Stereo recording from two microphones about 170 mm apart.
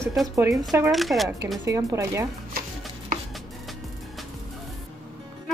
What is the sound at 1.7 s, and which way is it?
Speech, 15° right (ahead or behind).